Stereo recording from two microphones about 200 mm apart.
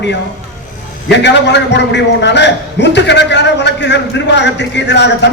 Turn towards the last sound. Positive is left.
turn(degrees=60)  # may be behind; listen again after turning